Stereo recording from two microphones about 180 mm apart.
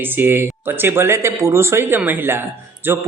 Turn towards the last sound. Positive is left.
turn(degrees=-10)  # may be behind; listen again after turning